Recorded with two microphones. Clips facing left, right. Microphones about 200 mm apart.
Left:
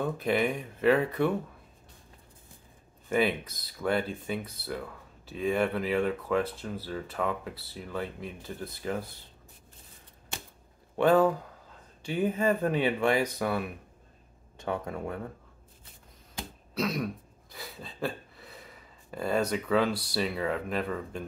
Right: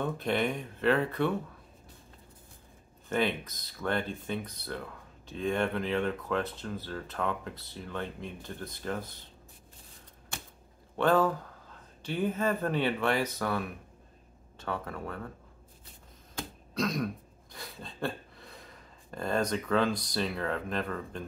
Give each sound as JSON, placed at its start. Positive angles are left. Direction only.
{"t": 0.0, "sound": "speech", "side_deg": 5}
{"t": 3.1, "sound": "speech", "side_deg": 10}
{"t": 11.0, "sound": "speech", "side_deg": 15}
{"t": 16.7, "sound": "throat clearing", "side_deg": 5}